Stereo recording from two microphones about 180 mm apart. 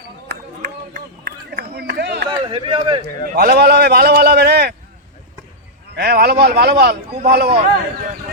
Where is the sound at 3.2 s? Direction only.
60° right (ahead or behind).